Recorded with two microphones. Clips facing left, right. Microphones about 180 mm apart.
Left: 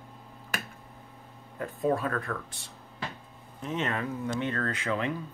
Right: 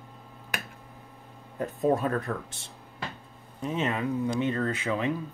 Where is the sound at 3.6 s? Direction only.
15° right (ahead or behind).